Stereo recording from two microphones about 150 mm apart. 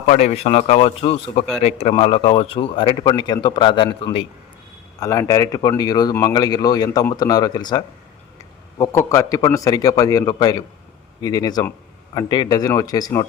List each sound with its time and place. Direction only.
0.0 s a man's voice: 50° left (ahead or behind); by 3.8 s 30° left (ahead or behind)
4.9 s a man's voice: 20° left (ahead or behind)